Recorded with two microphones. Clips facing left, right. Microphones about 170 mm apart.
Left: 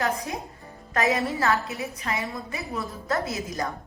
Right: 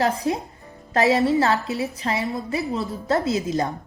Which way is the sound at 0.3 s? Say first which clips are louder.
Right 9 dB; 30° right (ahead or behind).